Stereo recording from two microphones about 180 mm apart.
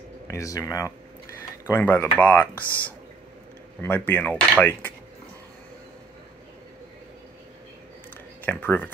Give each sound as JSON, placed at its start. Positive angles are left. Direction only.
{"t": 0.3, "sound": "speech", "side_deg": 15}
{"t": 3.8, "sound": "speech", "side_deg": 10}
{"t": 8.5, "sound": "speech", "side_deg": 10}